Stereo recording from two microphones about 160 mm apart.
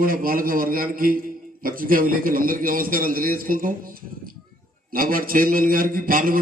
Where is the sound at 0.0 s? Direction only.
65° right (ahead or behind).